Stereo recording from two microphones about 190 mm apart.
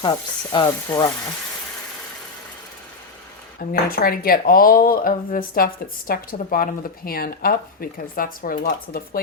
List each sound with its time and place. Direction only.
0.0 s speech: 25° left (ahead or behind)
3.6 s speech: 50° left (ahead or behind)